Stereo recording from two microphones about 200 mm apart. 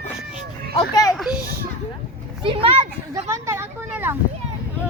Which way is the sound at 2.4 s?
25° right (ahead or behind).